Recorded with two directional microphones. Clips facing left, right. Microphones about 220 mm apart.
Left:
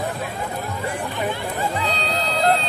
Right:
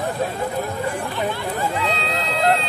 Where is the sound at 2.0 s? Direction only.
35° left (ahead or behind).